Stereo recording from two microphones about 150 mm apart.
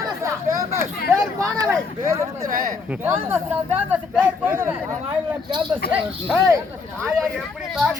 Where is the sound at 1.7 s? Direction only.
20° right (ahead or behind).